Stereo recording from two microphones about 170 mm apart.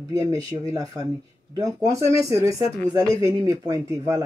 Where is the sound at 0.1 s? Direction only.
20° right (ahead or behind).